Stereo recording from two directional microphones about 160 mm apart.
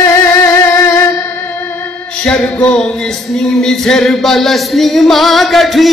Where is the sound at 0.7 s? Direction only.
15° left (ahead or behind).